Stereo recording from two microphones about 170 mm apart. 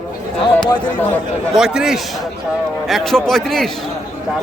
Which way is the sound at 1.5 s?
5° right (ahead or behind).